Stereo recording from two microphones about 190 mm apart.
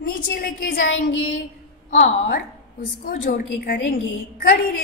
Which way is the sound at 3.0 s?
50° left (ahead or behind).